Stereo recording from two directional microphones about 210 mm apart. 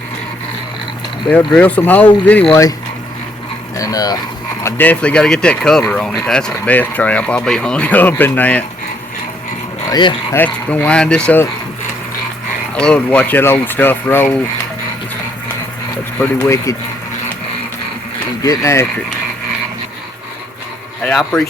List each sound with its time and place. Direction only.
1.5 s speech: 5° left (ahead or behind)
2.5 s speech: 15° left (ahead or behind)
3.8 s speech: 15° left (ahead or behind)
9.8 s speech: 20° left (ahead or behind)
10.3 s speech: 5° left (ahead or behind)
12.7 s speech: 5° left (ahead or behind)
16.2 s speech: 10° left (ahead or behind)
18.4 s speech: 15° left (ahead or behind)
21.0 s speech: centre (ahead or behind)